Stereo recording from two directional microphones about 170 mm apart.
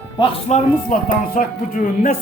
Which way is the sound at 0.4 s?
50° left (ahead or behind).